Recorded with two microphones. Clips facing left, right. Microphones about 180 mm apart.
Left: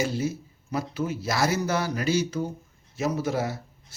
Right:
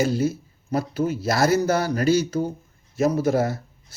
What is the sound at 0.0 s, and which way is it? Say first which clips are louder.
Speech: right 5 dB; 45° right (ahead or behind).